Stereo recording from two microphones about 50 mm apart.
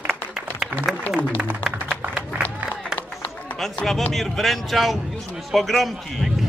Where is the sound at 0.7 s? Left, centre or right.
Right.